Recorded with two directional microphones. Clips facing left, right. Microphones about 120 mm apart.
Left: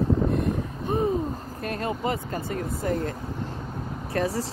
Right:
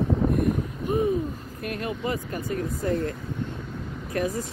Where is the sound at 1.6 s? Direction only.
35° left (ahead or behind).